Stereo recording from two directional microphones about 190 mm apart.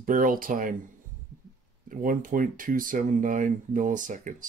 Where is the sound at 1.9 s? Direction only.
45° right (ahead or behind).